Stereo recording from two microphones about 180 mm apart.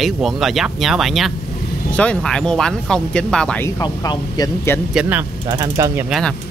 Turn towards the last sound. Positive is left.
turn(degrees=0)  # may be behind; listen again after turning